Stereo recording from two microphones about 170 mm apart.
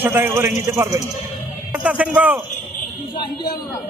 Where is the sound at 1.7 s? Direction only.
5° right (ahead or behind).